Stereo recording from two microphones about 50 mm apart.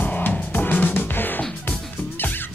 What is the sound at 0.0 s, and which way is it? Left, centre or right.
Music, left.